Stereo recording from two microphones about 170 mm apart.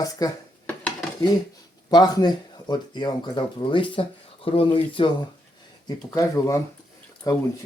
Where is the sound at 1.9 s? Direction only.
25° left (ahead or behind).